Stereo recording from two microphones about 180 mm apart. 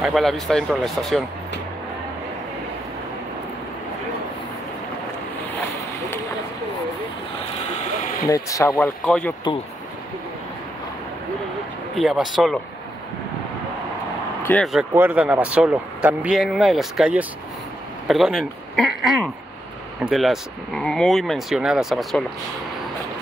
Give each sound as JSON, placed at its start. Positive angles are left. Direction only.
{"t": 0.0, "sound": "speech", "side_deg": 0}
{"t": 8.3, "sound": "speech", "side_deg": 15}
{"t": 12.0, "sound": "speech", "side_deg": 0}
{"t": 14.4, "sound": "speech", "side_deg": 10}
{"t": 14.7, "sound": "speech", "side_deg": -5}
{"t": 20.0, "sound": "speech", "side_deg": 0}